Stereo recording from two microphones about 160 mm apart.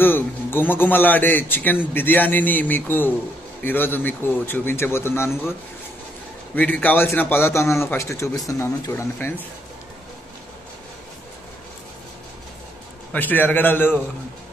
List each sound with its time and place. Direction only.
0.0 s a man's voice: 10° left (ahead or behind)
6.5 s a man's voice: 10° left (ahead or behind)
13.1 s a man's voice: 10° left (ahead or behind)